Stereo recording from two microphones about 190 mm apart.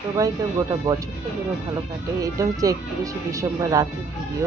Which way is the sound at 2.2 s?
15° right (ahead or behind).